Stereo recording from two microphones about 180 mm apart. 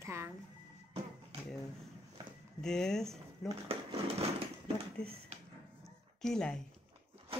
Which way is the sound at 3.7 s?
35° right (ahead or behind).